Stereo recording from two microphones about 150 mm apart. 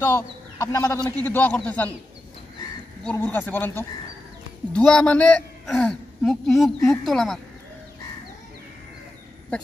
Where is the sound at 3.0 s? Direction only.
10° left (ahead or behind).